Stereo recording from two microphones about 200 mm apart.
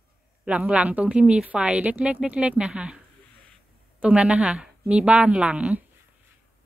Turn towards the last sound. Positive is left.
turn(degrees=-5)  # may be behind; listen again after turning